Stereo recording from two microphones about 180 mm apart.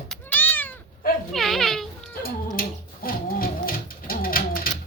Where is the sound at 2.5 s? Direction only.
55° left (ahead or behind).